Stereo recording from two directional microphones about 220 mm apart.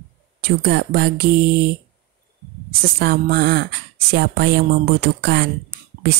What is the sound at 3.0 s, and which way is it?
Speech, 45° right (ahead or behind).